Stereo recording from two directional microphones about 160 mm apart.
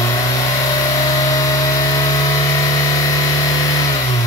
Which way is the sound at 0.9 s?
20° left (ahead or behind).